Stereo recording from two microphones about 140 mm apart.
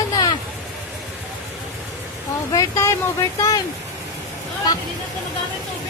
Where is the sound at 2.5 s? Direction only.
25° left (ahead or behind).